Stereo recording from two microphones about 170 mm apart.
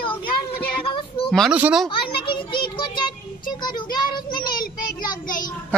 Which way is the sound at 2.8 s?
25° left (ahead or behind).